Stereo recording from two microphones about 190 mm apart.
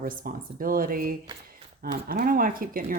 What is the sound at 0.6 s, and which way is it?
Speech, 50° right (ahead or behind).